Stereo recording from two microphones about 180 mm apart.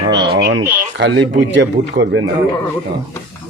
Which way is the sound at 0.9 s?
90° right.